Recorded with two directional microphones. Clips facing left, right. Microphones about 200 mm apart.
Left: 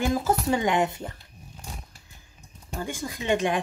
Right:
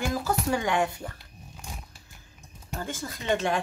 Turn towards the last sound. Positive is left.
turn(degrees=15)  # may be behind; listen again after turning